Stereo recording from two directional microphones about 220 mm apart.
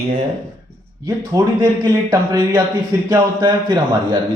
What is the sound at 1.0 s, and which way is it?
A man's voice, 15° right (ahead or behind).